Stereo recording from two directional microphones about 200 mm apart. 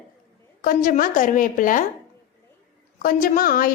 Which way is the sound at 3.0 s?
45° left (ahead or behind).